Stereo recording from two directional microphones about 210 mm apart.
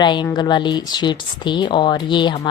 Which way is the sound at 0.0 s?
20° left (ahead or behind).